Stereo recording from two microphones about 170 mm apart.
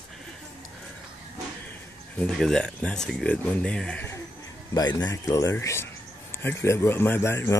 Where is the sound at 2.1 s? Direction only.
5° left (ahead or behind).